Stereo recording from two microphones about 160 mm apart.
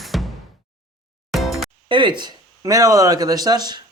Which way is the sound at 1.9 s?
30° right (ahead or behind).